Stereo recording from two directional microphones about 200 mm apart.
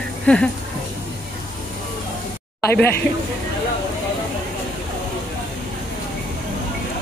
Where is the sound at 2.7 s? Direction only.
10° left (ahead or behind).